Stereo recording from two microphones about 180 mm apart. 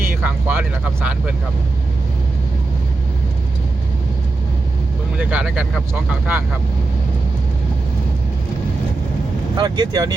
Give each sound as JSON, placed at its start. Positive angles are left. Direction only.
{"t": 0.0, "sound": "vehicle", "side_deg": -10}
{"t": 5.1, "sound": "speech", "side_deg": -10}
{"t": 9.6, "sound": "speech", "side_deg": -25}